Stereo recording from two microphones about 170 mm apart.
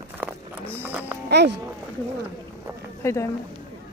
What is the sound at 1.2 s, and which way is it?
Speech, 80° right.